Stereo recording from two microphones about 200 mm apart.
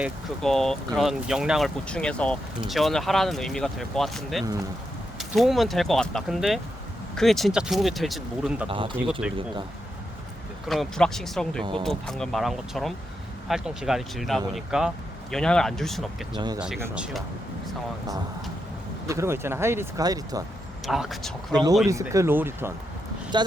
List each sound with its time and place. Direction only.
0.0 s speech: centre (ahead or behind)
8.7 s speech: 25° right (ahead or behind)
9.2 s speech: 5° right (ahead or behind)
10.7 s speech: centre (ahead or behind)
19.0 s speech: 15° right (ahead or behind)
20.8 s speech: centre (ahead or behind)
21.5 s speech: 20° right (ahead or behind)